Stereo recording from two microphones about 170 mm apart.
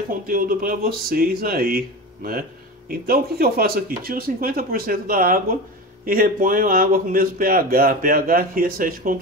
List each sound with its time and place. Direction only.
0.1 s speech: 55° right (ahead or behind)